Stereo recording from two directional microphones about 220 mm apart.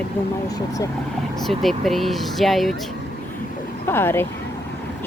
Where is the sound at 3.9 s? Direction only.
10° left (ahead or behind).